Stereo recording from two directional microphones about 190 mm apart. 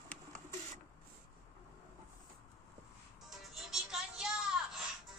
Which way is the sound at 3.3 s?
Centre (ahead or behind).